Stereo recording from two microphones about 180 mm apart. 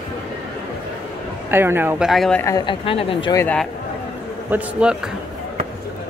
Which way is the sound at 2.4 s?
25° left (ahead or behind).